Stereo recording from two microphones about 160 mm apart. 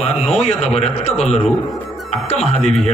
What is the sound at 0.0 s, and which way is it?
A man's voice, 45° left (ahead or behind).